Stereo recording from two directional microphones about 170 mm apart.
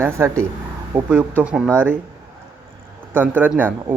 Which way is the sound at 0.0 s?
15° right (ahead or behind).